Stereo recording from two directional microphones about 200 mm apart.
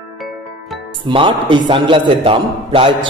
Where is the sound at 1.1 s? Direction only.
25° right (ahead or behind).